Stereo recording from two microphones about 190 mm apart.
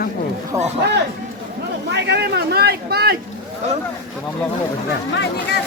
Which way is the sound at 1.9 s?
65° right (ahead or behind).